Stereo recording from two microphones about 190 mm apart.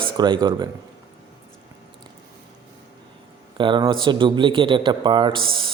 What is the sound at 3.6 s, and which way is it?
A man's voice, 25° right (ahead or behind).